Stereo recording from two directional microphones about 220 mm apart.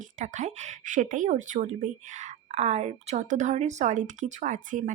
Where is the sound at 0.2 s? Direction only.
35° right (ahead or behind).